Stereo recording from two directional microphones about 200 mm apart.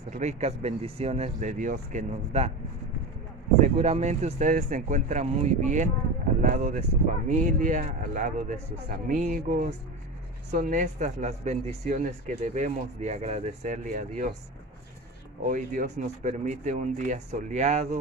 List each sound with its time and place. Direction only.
0.1 s speech: 35° right (ahead or behind)
3.6 s speech: 35° right (ahead or behind)
15.4 s speech: 40° right (ahead or behind)